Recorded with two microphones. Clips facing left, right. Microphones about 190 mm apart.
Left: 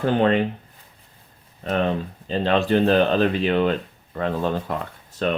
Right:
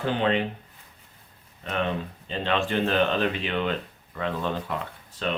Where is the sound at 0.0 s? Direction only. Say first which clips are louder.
Left 6 dB; 45° left (ahead or behind).